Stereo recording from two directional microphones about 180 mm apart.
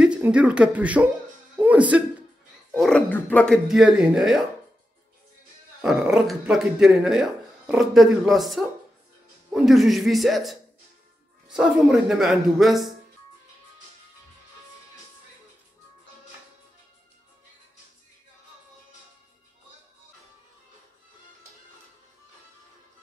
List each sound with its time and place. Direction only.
0.0 s speech: 5° right (ahead or behind)
2.7 s speech: 5° left (ahead or behind)
3.6 s speech: 5° right (ahead or behind)
5.8 s speech: 5° right (ahead or behind)